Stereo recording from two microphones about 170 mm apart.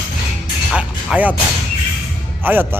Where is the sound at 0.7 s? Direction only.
10° right (ahead or behind).